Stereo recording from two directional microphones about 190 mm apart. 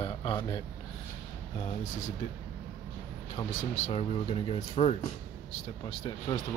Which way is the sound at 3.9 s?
30° left (ahead or behind).